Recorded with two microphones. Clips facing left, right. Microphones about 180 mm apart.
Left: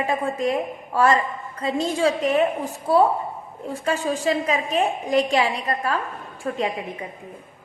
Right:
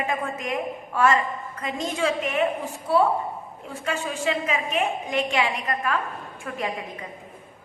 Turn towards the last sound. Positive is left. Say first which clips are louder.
# left 5 dB
turn(degrees=30)  # may be behind; listen again after turning